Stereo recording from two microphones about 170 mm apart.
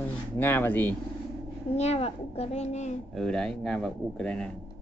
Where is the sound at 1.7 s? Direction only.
40° left (ahead or behind).